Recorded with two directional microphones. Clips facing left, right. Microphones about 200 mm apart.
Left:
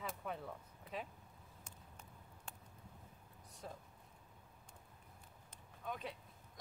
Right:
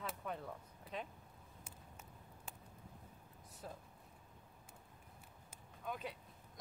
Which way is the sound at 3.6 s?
Centre (ahead or behind).